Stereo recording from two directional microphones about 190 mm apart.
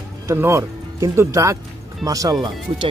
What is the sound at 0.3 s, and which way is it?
Speech, 15° right (ahead or behind).